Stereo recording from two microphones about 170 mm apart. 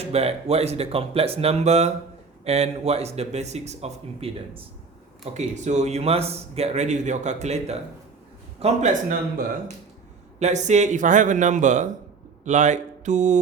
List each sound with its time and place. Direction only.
0.0 s a man's voice: 35° right (ahead or behind)
10.4 s a man's voice: 45° right (ahead or behind)